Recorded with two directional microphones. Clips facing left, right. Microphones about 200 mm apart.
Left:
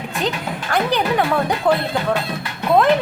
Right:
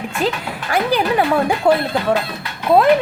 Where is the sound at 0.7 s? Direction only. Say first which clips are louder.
Right 2 dB; 5° right (ahead or behind).